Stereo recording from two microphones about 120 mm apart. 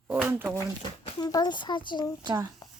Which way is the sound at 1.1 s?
35° left (ahead or behind).